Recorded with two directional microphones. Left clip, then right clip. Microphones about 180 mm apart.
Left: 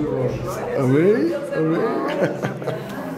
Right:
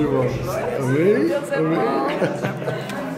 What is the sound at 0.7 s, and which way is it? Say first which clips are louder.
Speech: left 5 dB; 30° left (ahead or behind).